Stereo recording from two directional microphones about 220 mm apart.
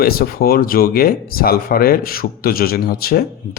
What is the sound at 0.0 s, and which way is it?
Speech, 45° left (ahead or behind).